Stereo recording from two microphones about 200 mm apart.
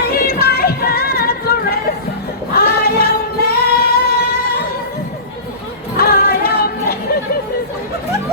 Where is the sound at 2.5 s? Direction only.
50° left (ahead or behind).